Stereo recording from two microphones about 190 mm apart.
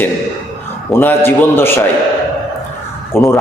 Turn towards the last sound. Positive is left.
turn(degrees=15)  # may be behind; listen again after turning